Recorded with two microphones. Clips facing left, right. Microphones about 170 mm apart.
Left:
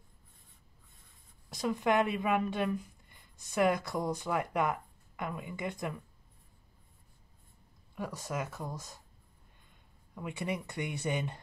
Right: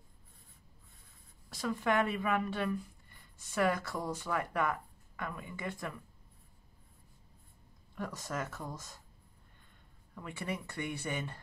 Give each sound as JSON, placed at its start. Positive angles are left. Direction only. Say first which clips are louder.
{"t": 1.5, "sound": "speech", "louder": "left 3 dB", "side_deg": 15}
{"t": 7.9, "sound": "speech", "louder": "left 2 dB", "side_deg": 10}
{"t": 10.1, "sound": "speech", "louder": "left 3 dB", "side_deg": 15}